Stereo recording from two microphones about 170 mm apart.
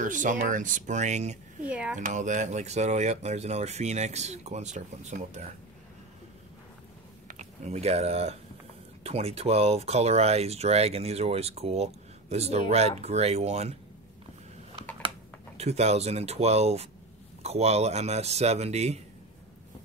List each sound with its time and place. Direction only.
0.0 s speech: 50° right (ahead or behind)
1.6 s speech: 5° right (ahead or behind)
2.0 s speech: 45° right (ahead or behind)
7.2 s speech: 40° right (ahead or behind)
15.5 s speech: 40° right (ahead or behind)